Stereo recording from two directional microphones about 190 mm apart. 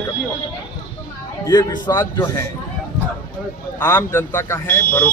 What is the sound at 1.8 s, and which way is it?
Speech, 20° left (ahead or behind).